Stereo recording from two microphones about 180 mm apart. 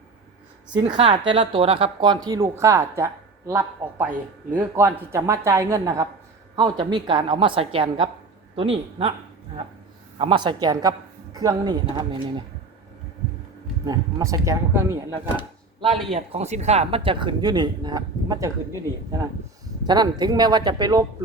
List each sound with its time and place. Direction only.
0.8 s a man's voice: 25° right (ahead or behind)
10.2 s speech: 25° right (ahead or behind)
13.8 s speech: 20° right (ahead or behind)
15.8 s speech: 30° right (ahead or behind)